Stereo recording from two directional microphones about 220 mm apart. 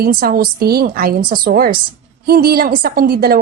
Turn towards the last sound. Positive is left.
turn(degrees=-40)  # may be behind; listen again after turning